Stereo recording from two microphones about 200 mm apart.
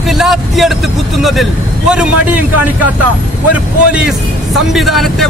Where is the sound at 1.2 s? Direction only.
Centre (ahead or behind).